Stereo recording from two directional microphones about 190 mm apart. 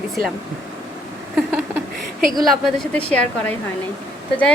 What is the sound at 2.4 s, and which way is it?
A woman's voice, centre (ahead or behind).